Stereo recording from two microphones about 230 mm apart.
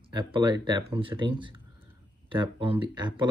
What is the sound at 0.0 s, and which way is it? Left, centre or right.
Speech, right.